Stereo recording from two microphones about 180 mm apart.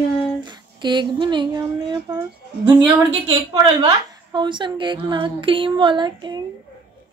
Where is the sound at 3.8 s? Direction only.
25° right (ahead or behind).